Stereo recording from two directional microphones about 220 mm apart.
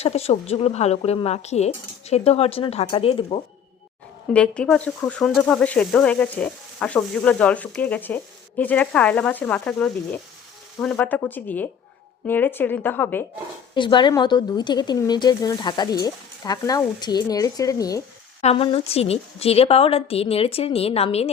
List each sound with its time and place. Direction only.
0.0 s speech: 30° left (ahead or behind)
4.3 s a woman's voice: 5° left (ahead or behind)
13.7 s speech: 20° left (ahead or behind)